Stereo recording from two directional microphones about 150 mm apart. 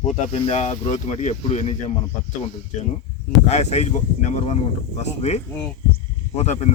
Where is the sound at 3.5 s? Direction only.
45° left (ahead or behind).